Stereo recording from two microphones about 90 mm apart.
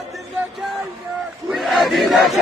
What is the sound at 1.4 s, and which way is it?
Crowd, centre (ahead or behind).